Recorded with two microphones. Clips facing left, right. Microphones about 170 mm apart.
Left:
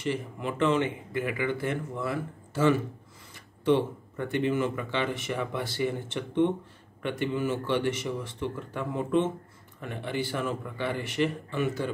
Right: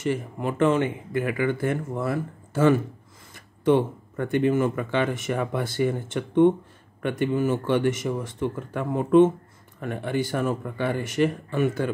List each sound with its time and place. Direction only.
0.0 s speech: 45° right (ahead or behind)